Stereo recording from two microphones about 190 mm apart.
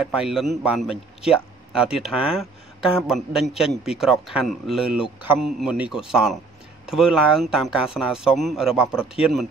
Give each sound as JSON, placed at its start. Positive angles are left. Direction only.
{"t": 0.0, "sound": "speech", "side_deg": -5}